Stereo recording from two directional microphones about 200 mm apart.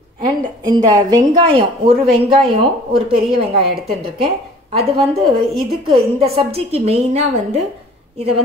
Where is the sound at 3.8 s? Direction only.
30° right (ahead or behind).